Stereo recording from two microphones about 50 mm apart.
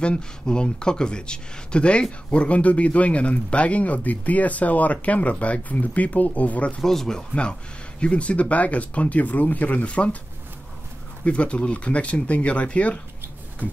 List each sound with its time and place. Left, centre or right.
0.0 s speech: centre
6.8 s speech: centre; by 10.1 s left
11.2 s speech: left